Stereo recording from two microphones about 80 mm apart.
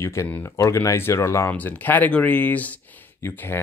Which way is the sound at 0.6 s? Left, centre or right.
Left.